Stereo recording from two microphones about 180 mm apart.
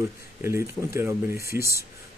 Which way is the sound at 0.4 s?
15° right (ahead or behind).